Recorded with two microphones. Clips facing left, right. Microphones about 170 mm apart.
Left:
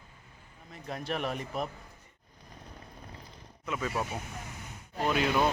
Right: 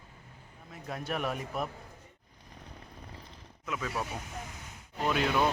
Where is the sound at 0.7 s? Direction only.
5° right (ahead or behind).